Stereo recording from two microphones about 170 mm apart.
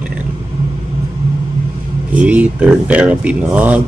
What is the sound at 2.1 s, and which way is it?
Speech, 10° right (ahead or behind).